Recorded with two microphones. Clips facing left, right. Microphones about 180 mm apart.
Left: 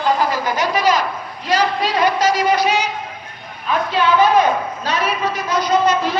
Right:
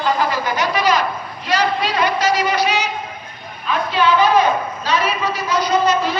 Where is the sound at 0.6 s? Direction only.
45° left (ahead or behind).